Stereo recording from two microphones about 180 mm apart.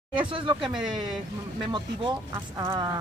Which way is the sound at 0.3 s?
30° right (ahead or behind).